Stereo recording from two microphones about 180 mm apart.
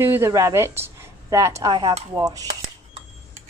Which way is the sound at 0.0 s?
15° right (ahead or behind).